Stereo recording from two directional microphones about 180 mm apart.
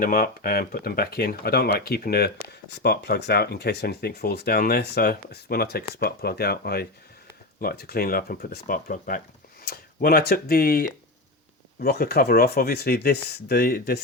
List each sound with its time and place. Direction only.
0.0 s speech: 55° left (ahead or behind)